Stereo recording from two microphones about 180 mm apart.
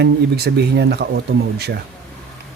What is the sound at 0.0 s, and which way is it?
Speech, 65° right (ahead or behind).